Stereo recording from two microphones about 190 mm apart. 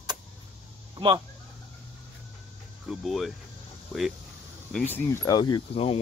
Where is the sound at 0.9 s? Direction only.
25° right (ahead or behind).